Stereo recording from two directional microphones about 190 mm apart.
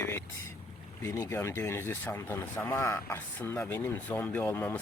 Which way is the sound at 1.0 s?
15° left (ahead or behind).